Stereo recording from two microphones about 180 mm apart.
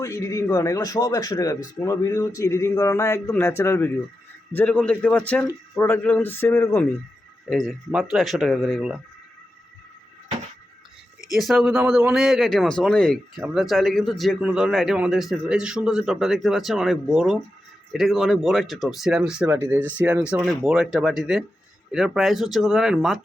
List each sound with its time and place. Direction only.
0.0 s a man's voice: 15° left (ahead or behind)
7.5 s speech: centre (ahead or behind)
11.3 s speech: centre (ahead or behind)